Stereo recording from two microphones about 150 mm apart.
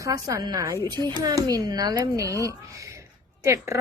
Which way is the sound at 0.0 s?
20° right (ahead or behind).